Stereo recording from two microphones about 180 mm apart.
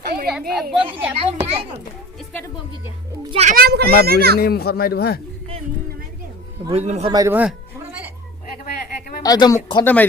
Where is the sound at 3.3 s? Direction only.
40° right (ahead or behind).